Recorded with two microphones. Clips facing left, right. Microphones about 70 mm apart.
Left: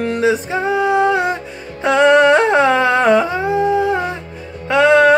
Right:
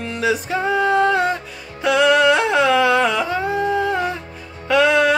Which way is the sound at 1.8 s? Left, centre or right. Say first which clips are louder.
Left 4 dB; left.